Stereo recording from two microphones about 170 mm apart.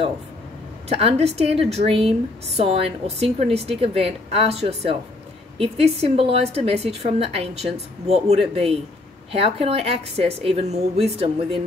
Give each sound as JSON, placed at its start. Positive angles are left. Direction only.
{"t": 0.8, "sound": "speech", "side_deg": -35}